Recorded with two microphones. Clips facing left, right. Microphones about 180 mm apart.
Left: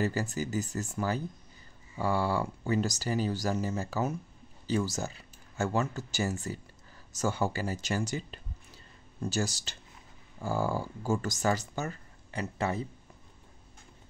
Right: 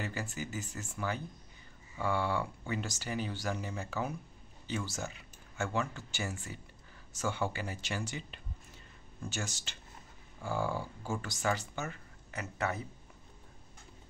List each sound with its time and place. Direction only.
0.0 s speech: 40° left (ahead or behind)